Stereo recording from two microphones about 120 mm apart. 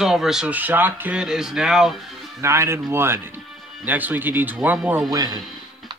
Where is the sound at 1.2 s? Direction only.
5° right (ahead or behind).